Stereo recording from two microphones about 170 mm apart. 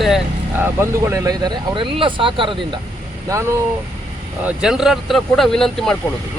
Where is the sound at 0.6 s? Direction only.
15° right (ahead or behind).